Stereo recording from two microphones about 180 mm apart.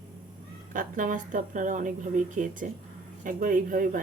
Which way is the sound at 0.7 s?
45° right (ahead or behind).